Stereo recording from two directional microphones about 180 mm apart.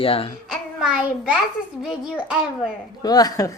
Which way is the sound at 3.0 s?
20° left (ahead or behind).